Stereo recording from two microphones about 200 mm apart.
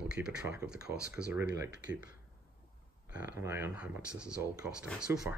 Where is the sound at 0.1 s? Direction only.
5° right (ahead or behind).